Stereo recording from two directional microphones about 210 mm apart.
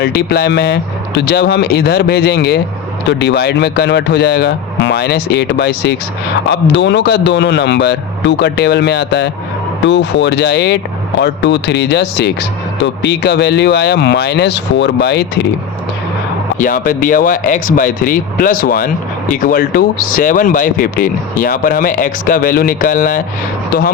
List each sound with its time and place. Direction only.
0.0 s speech: 50° left (ahead or behind)
16.6 s speech: 40° left (ahead or behind)